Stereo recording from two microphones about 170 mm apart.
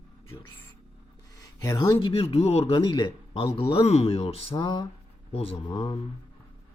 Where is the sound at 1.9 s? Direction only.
35° left (ahead or behind).